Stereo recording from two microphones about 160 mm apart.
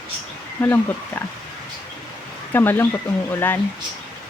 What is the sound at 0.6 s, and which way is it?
Speech, 15° left (ahead or behind).